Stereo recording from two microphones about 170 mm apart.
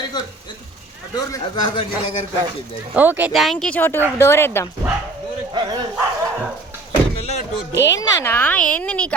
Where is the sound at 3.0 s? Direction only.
10° right (ahead or behind).